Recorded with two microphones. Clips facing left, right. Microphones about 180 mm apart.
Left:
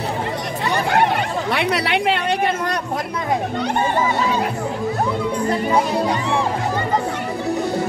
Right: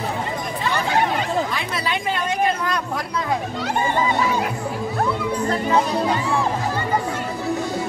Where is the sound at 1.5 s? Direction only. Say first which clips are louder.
Left 6 dB; 70° left (ahead or behind).